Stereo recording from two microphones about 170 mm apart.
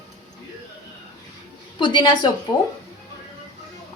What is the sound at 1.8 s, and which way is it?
Speech, 25° left (ahead or behind).